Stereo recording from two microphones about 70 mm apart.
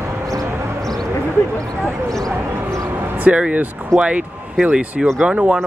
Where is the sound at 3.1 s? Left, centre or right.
Right.